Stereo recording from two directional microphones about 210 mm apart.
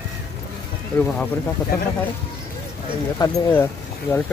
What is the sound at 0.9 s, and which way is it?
Speech, 5° left (ahead or behind).